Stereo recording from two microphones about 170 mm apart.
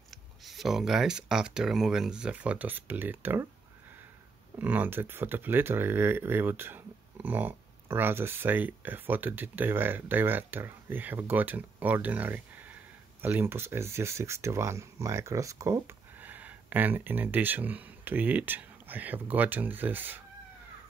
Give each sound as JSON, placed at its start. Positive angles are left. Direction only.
{"t": 0.4, "sound": "speech", "side_deg": 0}
{"t": 4.6, "sound": "speech", "side_deg": -10}